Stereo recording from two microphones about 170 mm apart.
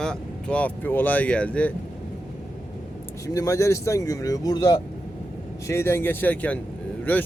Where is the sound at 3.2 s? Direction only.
20° left (ahead or behind).